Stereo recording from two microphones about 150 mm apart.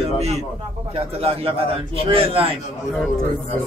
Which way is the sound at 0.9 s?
40° right (ahead or behind).